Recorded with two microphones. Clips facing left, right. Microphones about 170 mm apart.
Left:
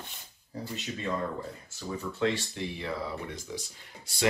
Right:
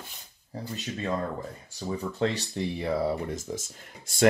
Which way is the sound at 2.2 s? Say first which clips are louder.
Even; 40° right (ahead or behind).